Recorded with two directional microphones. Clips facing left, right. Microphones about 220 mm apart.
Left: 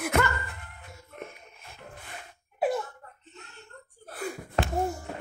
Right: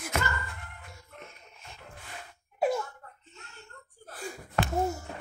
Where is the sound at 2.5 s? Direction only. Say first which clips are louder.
Even; centre (ahead or behind).